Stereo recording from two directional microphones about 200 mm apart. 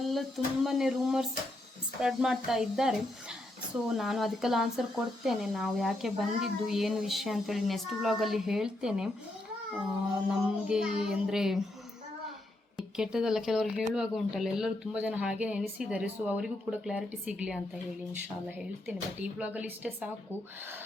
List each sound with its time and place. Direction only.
0.1 s speech: centre (ahead or behind)
10.2 s speech: 5° right (ahead or behind)
13.0 s speech: 5° right (ahead or behind)